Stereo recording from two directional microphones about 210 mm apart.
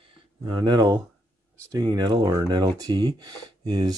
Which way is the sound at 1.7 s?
20° right (ahead or behind).